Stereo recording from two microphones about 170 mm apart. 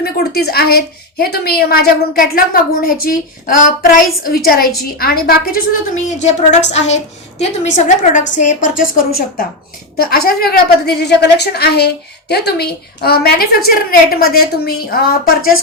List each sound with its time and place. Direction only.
0.0 s a woman's voice: 65° left (ahead or behind)
10.8 s a woman's voice: 75° left (ahead or behind)